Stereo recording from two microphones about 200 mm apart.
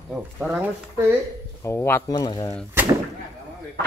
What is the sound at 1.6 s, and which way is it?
Speech, 15° left (ahead or behind).